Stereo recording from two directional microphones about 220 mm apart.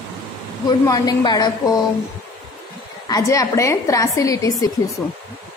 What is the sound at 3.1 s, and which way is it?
A woman's voice, 15° left (ahead or behind).